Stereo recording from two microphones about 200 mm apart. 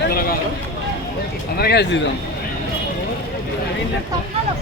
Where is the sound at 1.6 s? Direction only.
55° left (ahead or behind).